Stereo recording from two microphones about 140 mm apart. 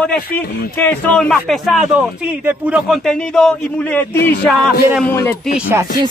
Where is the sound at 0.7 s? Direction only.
10° left (ahead or behind); by 3.0 s 10° right (ahead or behind).